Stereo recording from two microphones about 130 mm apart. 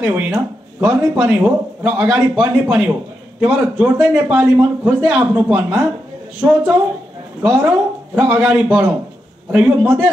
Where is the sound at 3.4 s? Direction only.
5° right (ahead or behind).